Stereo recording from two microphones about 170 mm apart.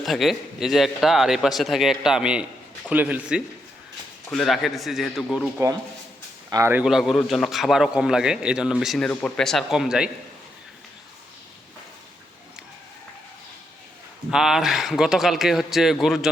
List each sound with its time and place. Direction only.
0.0 s a man's voice: centre (ahead or behind)
6.5 s speech: 15° right (ahead or behind)
6.8 s a man's voice: centre (ahead or behind)
14.3 s a man's voice: 5° right (ahead or behind)